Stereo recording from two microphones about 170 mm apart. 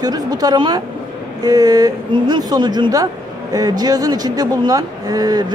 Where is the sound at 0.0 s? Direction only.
25° right (ahead or behind).